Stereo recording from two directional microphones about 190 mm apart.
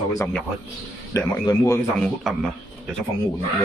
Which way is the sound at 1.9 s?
5° left (ahead or behind).